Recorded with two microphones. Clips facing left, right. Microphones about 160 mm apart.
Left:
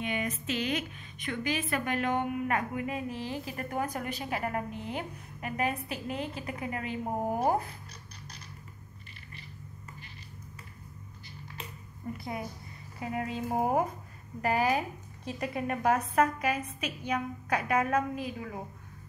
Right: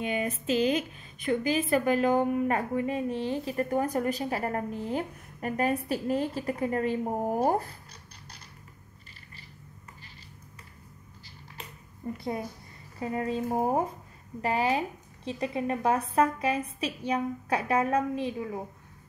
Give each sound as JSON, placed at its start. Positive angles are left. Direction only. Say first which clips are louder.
{"t": 0.0, "sound": "a woman's voice", "louder": "right 3 dB", "side_deg": -35}
{"t": 12.2, "sound": "a woman's voice", "louder": "right 6 dB", "side_deg": -35}